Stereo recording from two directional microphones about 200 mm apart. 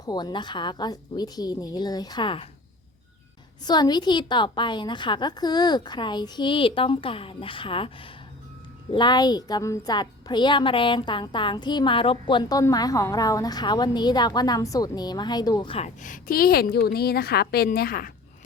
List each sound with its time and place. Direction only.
0.0 s a woman's voice: 20° left (ahead or behind)
3.6 s a woman's voice: 20° left (ahead or behind)
16.0 s a woman's voice: 40° left (ahead or behind)